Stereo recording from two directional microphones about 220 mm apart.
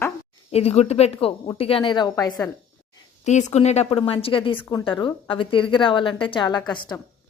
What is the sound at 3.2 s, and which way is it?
A woman's voice, 30° left (ahead or behind).